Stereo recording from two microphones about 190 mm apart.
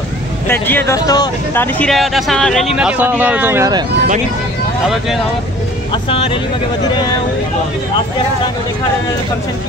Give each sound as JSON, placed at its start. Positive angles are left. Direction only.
{"t": 0.5, "sound": "speech", "side_deg": 10}
{"t": 6.0, "sound": "speech", "side_deg": 30}